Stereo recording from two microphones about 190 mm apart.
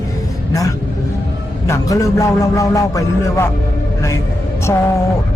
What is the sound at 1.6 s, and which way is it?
A man's voice, 15° left (ahead or behind).